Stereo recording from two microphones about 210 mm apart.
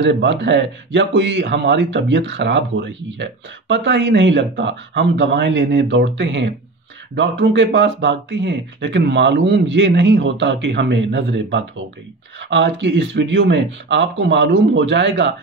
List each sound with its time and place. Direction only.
0.0 s speech: 60° right (ahead or behind)